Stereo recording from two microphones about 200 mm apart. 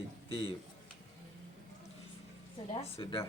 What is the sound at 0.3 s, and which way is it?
Speech, 25° left (ahead or behind).